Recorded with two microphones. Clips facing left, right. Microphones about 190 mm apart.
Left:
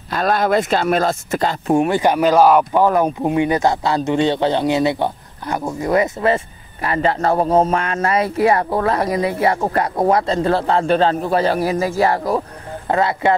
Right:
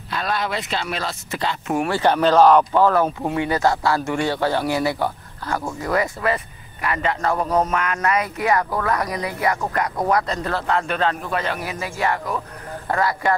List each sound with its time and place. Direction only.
0.1 s speech: 45° left (ahead or behind)
1.7 s speech: 20° left (ahead or behind); by 12.4 s 35° left (ahead or behind)
12.8 s speech: 25° left (ahead or behind)